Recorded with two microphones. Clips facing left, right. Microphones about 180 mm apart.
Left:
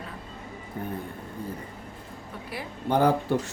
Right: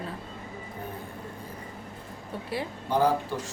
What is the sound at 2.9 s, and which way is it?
Speech, 60° left (ahead or behind).